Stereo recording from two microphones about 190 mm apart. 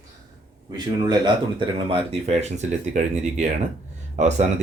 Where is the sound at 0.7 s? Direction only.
20° right (ahead or behind).